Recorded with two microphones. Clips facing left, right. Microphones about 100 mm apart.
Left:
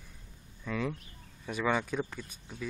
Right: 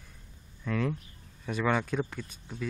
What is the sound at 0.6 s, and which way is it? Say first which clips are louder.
Speech: right 3 dB; 5° left (ahead or behind).